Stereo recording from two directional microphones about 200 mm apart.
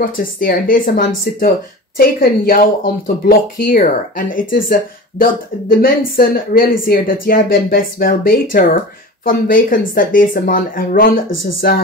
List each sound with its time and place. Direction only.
0.0 s speech: 45° left (ahead or behind)